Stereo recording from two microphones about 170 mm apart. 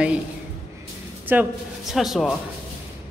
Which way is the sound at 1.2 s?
10° right (ahead or behind).